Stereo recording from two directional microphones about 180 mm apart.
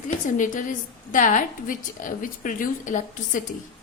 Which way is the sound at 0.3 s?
45° left (ahead or behind).